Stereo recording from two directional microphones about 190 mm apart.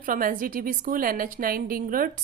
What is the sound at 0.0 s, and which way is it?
A woman's voice, 45° right (ahead or behind).